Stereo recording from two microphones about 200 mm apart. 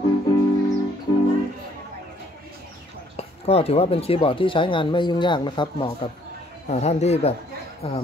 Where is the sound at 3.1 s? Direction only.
30° left (ahead or behind).